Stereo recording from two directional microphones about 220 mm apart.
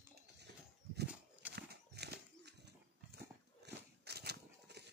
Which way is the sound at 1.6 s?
50° right (ahead or behind).